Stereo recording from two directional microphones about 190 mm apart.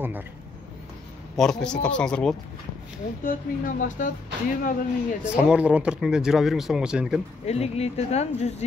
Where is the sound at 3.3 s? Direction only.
45° left (ahead or behind).